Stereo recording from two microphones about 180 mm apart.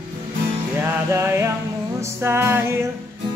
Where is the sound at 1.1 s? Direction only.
15° right (ahead or behind).